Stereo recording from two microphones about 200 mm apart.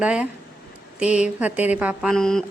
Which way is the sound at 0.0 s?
5° right (ahead or behind).